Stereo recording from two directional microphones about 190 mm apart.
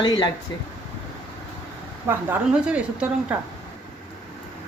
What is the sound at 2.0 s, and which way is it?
Speech, 5° right (ahead or behind).